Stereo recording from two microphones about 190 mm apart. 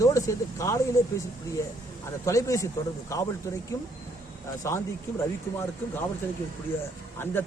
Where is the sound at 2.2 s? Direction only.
15° left (ahead or behind).